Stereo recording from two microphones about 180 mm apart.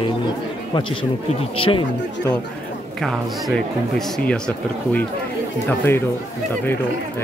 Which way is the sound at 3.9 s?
5° left (ahead or behind).